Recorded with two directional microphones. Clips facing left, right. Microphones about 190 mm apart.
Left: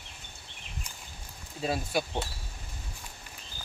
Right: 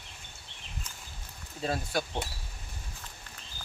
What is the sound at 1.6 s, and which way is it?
Speech, 10° left (ahead or behind).